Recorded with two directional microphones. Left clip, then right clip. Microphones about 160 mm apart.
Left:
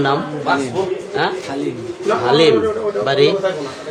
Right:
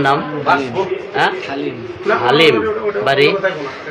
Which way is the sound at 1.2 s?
25° left (ahead or behind).